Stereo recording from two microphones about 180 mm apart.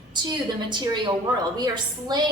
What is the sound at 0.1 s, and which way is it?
A woman's voice, 25° right (ahead or behind).